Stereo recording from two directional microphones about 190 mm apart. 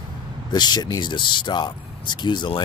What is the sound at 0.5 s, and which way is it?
Speech, 20° left (ahead or behind).